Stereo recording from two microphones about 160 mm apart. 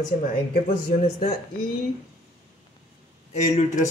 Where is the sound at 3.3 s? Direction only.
45° left (ahead or behind).